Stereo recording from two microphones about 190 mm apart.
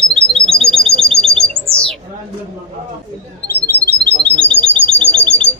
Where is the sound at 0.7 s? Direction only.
5° left (ahead or behind).